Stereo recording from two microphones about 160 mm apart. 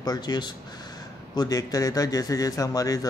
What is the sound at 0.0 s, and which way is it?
Speech, 25° left (ahead or behind).